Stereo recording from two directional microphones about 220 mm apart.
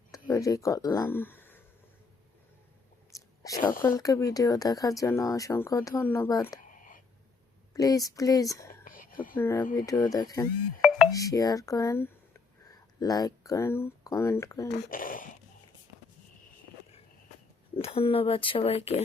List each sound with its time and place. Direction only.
0.1 s speech: 15° left (ahead or behind)
3.1 s whispering: 15° left (ahead or behind)
3.8 s speech: 15° left (ahead or behind)
7.7 s speech: 15° left (ahead or behind)
8.8 s whispering: 40° left (ahead or behind)
9.3 s speech: 10° left (ahead or behind)
10.8 s music: 5° right (ahead or behind)
11.1 s speech: 15° left (ahead or behind)
14.7 s speech: 40° left (ahead or behind)
17.7 s speech: 25° left (ahead or behind)